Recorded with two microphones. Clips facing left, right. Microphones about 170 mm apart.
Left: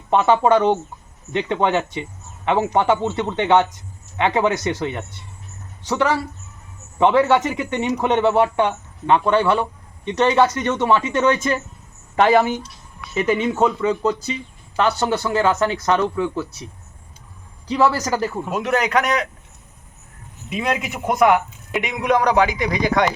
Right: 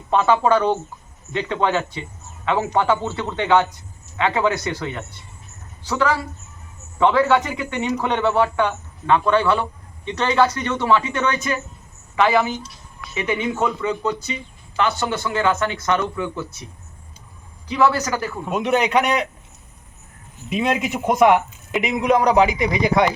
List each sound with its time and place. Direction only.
0.1 s a woman's voice: 20° left (ahead or behind)
12.1 s speech: 40° left (ahead or behind)
17.7 s speech: 35° left (ahead or behind)
18.5 s a man's voice: 20° right (ahead or behind)
20.5 s a man's voice: 20° right (ahead or behind)